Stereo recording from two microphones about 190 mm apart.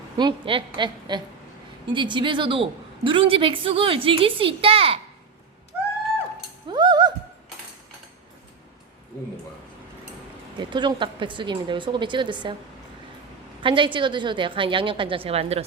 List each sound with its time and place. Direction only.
0.2 s a woman's voice: 25° right (ahead or behind)
6.7 s a sound: 25° right (ahead or behind)
10.6 s a woman's voice: 25° right (ahead or behind)
13.6 s a woman's voice: 25° right (ahead or behind)